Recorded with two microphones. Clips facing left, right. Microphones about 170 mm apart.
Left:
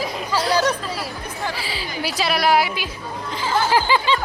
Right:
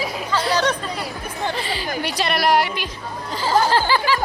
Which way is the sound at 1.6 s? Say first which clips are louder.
Right 3 dB; 5° left (ahead or behind).